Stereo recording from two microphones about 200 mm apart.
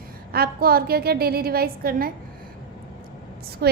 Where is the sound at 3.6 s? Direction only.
50° right (ahead or behind).